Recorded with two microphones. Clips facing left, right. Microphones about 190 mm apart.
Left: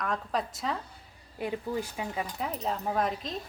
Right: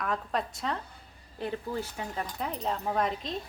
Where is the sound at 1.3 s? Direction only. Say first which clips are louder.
Left 1 dB; 10° left (ahead or behind).